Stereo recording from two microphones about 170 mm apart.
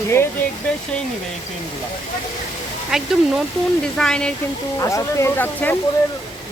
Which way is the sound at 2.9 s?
Centre (ahead or behind).